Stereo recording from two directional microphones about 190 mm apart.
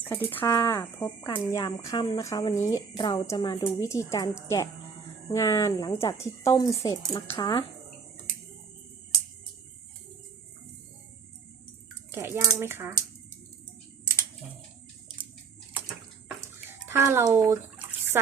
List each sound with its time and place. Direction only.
0.3 s speech: 15° left (ahead or behind)
12.1 s speech: 15° right (ahead or behind)
16.4 s bathtub: 15° right (ahead or behind)